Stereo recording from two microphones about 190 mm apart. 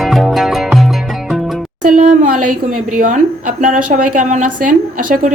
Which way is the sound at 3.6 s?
45° right (ahead or behind).